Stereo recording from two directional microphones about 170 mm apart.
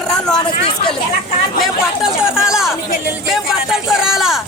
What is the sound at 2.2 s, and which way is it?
A man's voice, 5° right (ahead or behind).